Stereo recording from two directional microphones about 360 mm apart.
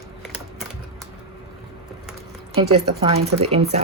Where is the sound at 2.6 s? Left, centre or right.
Centre.